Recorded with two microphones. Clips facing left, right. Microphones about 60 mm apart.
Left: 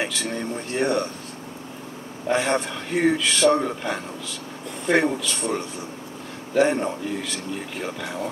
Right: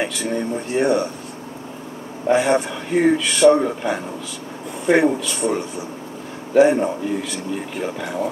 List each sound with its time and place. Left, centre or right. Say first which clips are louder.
0.0 s a man's voice: right 4 dB; centre
2.2 s a man's voice: right 5 dB; centre